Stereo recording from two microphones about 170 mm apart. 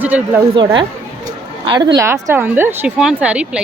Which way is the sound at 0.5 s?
30° right (ahead or behind).